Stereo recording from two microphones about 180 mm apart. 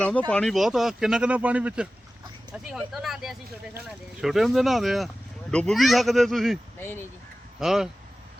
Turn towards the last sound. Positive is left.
turn(degrees=0)  # may be behind; listen again after turning